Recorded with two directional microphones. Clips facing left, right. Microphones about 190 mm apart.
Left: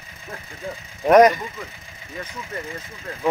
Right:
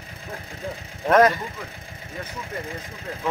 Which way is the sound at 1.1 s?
15° left (ahead or behind).